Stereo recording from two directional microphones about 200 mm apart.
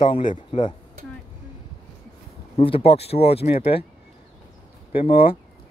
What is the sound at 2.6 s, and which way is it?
Speech, 30° left (ahead or behind).